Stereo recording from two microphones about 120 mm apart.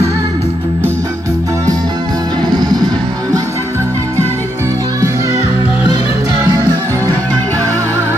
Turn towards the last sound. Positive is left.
turn(degrees=-30)  # may be behind; listen again after turning